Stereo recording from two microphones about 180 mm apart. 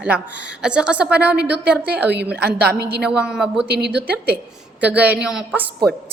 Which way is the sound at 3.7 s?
65° right (ahead or behind).